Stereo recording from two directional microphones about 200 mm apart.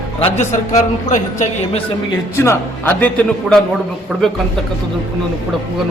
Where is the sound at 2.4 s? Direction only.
10° left (ahead or behind).